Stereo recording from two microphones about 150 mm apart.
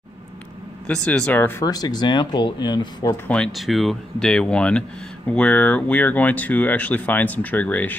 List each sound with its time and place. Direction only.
0.8 s speech: 5° left (ahead or behind)
1.7 s speech: 25° left (ahead or behind)
3.3 s speech: centre (ahead or behind)